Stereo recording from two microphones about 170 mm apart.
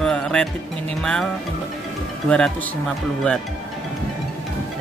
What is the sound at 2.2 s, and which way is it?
Speech, 5° left (ahead or behind).